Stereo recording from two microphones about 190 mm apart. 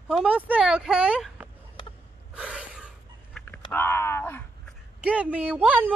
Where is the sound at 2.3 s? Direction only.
5° right (ahead or behind).